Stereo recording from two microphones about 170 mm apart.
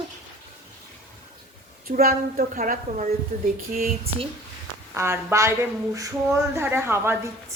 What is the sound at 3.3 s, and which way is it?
Speech, 40° right (ahead or behind).